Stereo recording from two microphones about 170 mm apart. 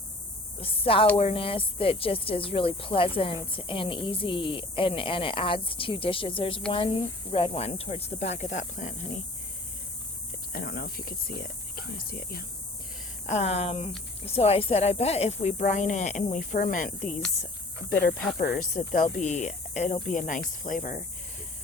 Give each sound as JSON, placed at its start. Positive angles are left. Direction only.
{"t": 0.6, "sound": "a woman's voice", "side_deg": 35}
{"t": 10.5, "sound": "speech", "side_deg": 65}
{"t": 13.2, "sound": "a woman's voice", "side_deg": 40}
{"t": 17.0, "sound": "a woman's voice", "side_deg": 5}
{"t": 17.8, "sound": "speech", "side_deg": 65}